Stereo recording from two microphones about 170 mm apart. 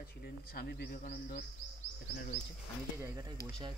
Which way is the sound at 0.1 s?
60° left (ahead or behind).